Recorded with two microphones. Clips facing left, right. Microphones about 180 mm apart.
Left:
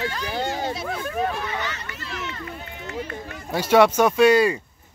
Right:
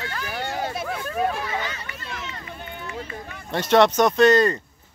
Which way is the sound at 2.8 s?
55° left (ahead or behind).